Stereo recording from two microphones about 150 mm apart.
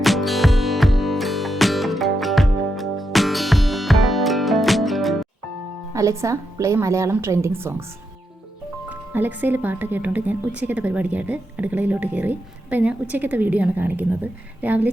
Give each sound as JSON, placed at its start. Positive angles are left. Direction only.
{"t": 0.0, "sound": "music", "side_deg": 0}
{"t": 5.9, "sound": "a woman's voice", "side_deg": -20}
{"t": 8.9, "sound": "speech", "side_deg": -10}